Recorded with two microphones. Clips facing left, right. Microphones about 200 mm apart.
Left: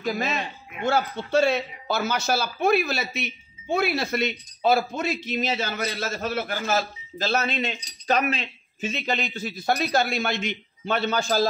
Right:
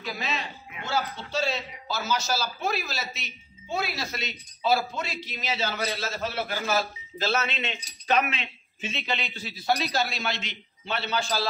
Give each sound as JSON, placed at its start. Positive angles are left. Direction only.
{"t": 0.0, "sound": "a man's voice", "side_deg": 50}